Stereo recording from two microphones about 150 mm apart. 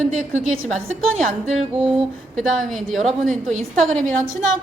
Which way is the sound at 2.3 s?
Centre (ahead or behind).